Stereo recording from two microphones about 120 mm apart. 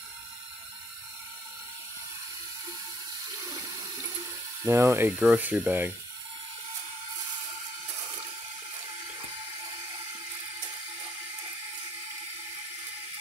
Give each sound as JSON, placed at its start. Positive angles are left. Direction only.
{"t": 3.4, "sound": "water", "side_deg": -30}
{"t": 7.8, "sound": "water", "side_deg": -35}